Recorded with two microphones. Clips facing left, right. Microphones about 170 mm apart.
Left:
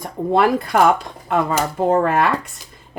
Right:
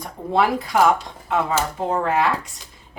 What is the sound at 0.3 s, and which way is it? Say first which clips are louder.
Speech: left 2 dB; 55° left (ahead or behind).